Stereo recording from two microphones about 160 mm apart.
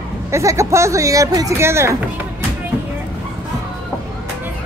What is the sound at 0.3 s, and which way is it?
Speech, 20° right (ahead or behind).